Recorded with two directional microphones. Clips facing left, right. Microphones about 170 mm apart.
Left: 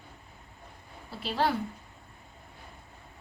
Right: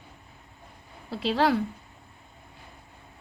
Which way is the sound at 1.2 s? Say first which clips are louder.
Right 5 dB; 90° right.